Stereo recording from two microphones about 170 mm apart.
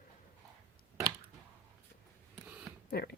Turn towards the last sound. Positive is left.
turn(degrees=65)  # may be behind; listen again after turning